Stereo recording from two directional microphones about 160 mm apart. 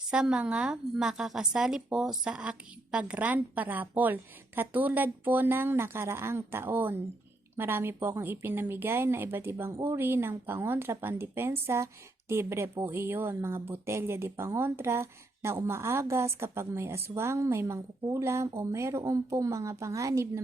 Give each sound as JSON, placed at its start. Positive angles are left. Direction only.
{"t": 0.1, "sound": "speech", "side_deg": -5}